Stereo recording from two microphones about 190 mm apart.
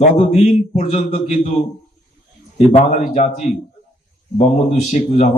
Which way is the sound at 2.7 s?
35° left (ahead or behind).